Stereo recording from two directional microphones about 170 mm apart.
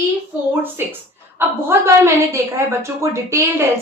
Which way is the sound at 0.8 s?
15° right (ahead or behind).